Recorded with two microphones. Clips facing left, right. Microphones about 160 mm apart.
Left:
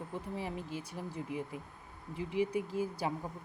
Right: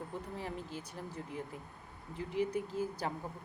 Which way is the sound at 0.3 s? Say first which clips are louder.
Left 4 dB; 10° left (ahead or behind).